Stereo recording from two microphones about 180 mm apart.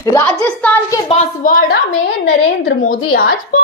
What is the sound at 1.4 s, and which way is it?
Speech, 50° left (ahead or behind).